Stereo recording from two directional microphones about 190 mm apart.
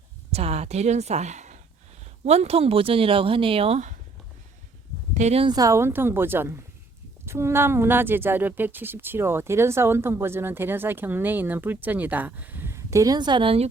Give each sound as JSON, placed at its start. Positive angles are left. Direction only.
{"t": 0.3, "sound": "speech", "side_deg": -30}
{"t": 5.1, "sound": "a woman's voice", "side_deg": -35}